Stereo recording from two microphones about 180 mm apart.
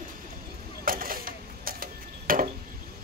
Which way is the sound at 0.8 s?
50° right (ahead or behind).